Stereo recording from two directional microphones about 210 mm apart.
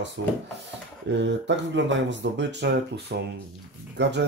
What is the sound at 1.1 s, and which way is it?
Speech, 60° right (ahead or behind).